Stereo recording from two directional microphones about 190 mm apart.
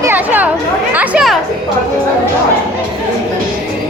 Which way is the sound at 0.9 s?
5° right (ahead or behind).